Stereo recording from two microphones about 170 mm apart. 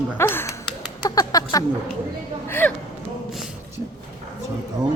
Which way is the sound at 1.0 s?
20° left (ahead or behind).